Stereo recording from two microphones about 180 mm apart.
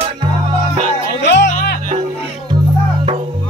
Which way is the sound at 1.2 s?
75° left (ahead or behind).